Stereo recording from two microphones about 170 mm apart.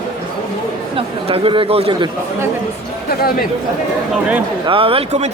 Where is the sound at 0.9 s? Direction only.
30° right (ahead or behind).